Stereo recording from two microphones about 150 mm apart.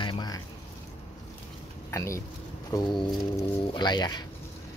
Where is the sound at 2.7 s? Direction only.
30° left (ahead or behind).